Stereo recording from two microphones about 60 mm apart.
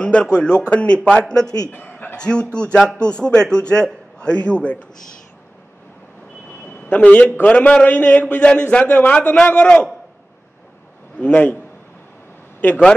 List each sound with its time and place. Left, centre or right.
0.0 s a man's voice: left
1.7 s chuckle: left
2.1 s a man's voice: centre
6.7 s a sound: left
7.4 s a man's voice: left
11.1 s a man's voice: left
12.5 s a sound: left